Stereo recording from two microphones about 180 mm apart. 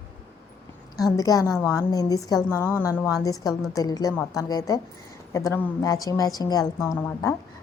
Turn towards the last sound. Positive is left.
turn(degrees=15)  # may be behind; listen again after turning